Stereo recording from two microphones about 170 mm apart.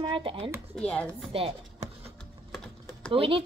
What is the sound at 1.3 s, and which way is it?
Speech, 35° right (ahead or behind).